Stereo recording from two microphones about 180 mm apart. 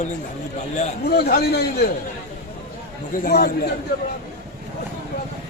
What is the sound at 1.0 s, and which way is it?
Speech, 60° left (ahead or behind).